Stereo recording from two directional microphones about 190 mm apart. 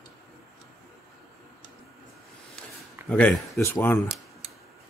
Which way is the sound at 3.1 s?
5° left (ahead or behind).